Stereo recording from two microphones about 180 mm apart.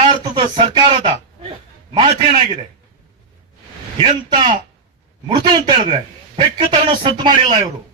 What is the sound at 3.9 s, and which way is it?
A man's voice, 25° right (ahead or behind).